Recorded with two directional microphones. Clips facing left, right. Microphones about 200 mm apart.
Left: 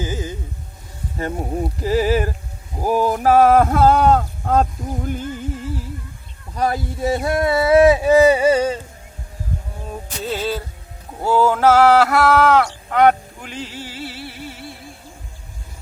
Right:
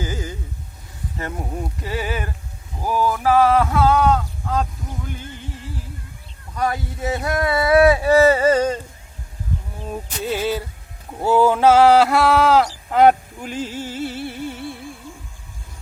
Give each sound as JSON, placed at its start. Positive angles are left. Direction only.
{"t": 0.0, "sound": "music", "side_deg": 20}
{"t": 1.2, "sound": "speech", "side_deg": 30}
{"t": 6.6, "sound": "speech", "side_deg": 35}
{"t": 9.9, "sound": "music", "side_deg": -15}
{"t": 12.0, "sound": "speech", "side_deg": -25}
{"t": 13.4, "sound": "music", "side_deg": -45}